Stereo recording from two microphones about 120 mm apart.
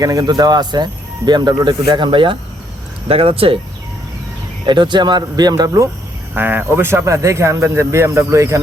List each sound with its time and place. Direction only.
0.0 s speech: 30° right (ahead or behind); by 3.6 s 50° right (ahead or behind)
4.6 s speech: 40° right (ahead or behind)
6.3 s speech: 15° right (ahead or behind)